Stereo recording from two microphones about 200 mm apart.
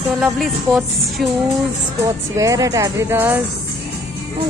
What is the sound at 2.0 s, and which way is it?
Speech, 15° right (ahead or behind).